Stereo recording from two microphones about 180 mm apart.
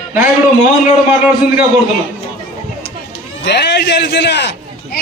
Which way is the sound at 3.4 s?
70° left (ahead or behind).